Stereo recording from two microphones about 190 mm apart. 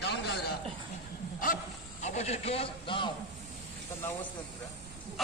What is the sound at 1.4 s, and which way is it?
A man's voice, 40° left (ahead or behind).